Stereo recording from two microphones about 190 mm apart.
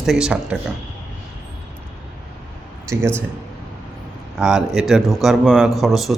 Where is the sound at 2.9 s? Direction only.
15° right (ahead or behind).